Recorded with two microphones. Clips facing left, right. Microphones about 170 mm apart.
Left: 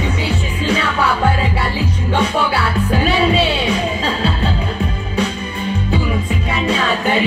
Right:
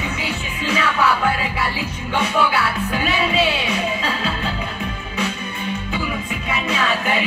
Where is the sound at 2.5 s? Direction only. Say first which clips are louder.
Left 4 dB; 30° left (ahead or behind).